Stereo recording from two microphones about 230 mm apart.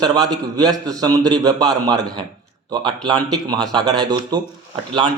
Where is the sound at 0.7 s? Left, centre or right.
Centre.